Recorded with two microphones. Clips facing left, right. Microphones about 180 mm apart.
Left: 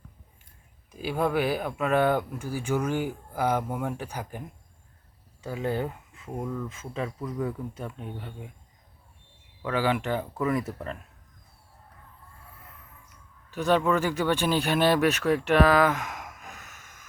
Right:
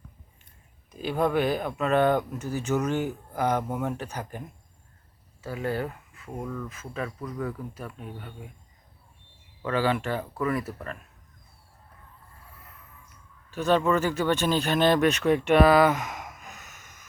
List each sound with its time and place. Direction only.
0.9 s speech: 10° left (ahead or behind); by 6.3 s 25° left (ahead or behind)
6.4 s speech: 10° left (ahead or behind)
6.7 s speech: 25° left (ahead or behind)
7.2 s speech: 10° left (ahead or behind)
7.4 s speech: 20° left (ahead or behind)
9.6 s speech: 15° left (ahead or behind)
13.5 s speech: 15° left (ahead or behind); by 17.1 s 5° right (ahead or behind)